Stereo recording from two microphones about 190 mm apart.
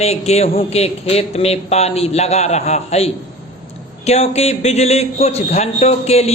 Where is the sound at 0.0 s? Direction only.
35° left (ahead or behind).